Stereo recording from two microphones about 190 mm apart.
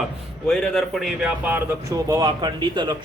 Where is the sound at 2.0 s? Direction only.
20° right (ahead or behind).